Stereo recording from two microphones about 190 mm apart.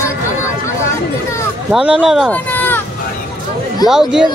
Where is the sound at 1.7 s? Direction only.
5° right (ahead or behind).